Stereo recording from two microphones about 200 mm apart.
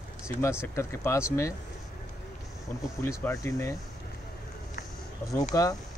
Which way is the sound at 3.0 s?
15° left (ahead or behind).